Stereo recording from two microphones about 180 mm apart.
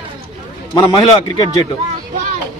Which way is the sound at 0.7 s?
25° left (ahead or behind).